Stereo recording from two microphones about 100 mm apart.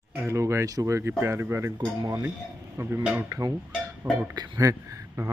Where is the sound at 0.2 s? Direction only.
30° right (ahead or behind).